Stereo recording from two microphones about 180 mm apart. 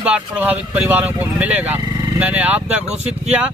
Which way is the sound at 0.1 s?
5° right (ahead or behind).